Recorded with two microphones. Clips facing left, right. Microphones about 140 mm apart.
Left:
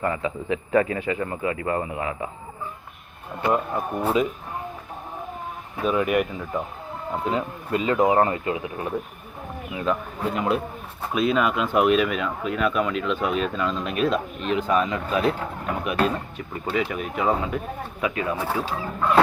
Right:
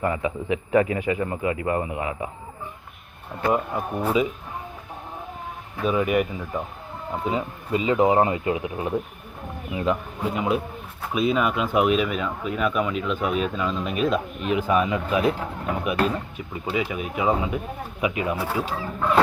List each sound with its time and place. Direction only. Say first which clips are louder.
0.0 s a man's voice: right 1 dB; 15° right (ahead or behind)
3.5 s speech: left 1 dB; 5° right (ahead or behind)
5.8 s speech: even; centre (ahead or behind)
7.9 s speech: right 1 dB; 15° right (ahead or behind)